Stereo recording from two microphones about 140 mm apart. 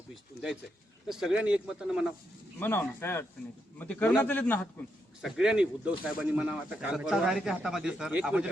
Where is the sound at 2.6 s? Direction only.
15° left (ahead or behind).